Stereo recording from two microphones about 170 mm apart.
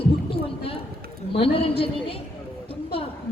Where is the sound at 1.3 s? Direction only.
35° left (ahead or behind).